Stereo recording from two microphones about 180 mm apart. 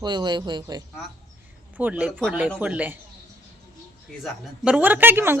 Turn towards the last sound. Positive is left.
turn(degrees=-10)  # may be behind; listen again after turning